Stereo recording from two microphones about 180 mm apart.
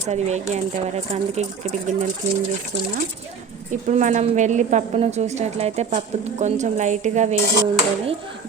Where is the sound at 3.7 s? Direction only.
45° right (ahead or behind).